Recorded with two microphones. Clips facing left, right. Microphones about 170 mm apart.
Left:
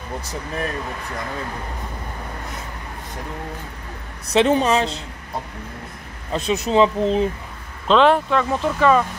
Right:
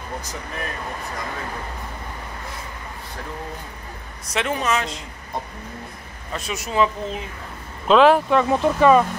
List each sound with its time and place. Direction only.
4.3 s speech: 30° left (ahead or behind)
6.3 s speech: 30° left (ahead or behind)
7.9 s speech: 5° right (ahead or behind)
8.4 s speech: 15° right (ahead or behind)